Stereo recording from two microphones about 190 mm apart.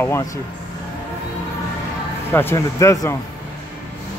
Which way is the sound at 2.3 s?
15° left (ahead or behind).